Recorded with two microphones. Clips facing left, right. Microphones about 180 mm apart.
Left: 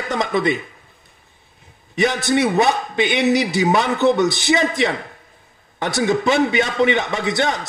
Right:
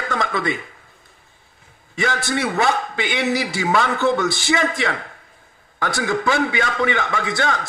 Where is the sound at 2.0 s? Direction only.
20° left (ahead or behind).